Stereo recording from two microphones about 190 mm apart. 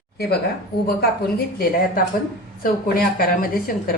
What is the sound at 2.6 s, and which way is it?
Speech, 50° left (ahead or behind).